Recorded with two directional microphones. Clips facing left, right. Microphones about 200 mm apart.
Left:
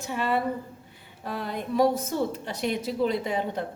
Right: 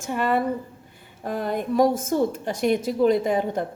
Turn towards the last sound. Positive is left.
turn(degrees=-50)  # may be behind; listen again after turning